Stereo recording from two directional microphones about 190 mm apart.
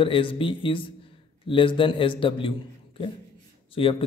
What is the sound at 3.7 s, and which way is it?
Speech, 30° left (ahead or behind).